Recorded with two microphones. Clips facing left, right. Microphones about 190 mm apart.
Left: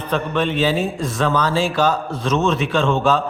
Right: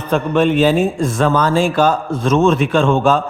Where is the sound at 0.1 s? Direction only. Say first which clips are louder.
Right 6 dB; 50° right (ahead or behind).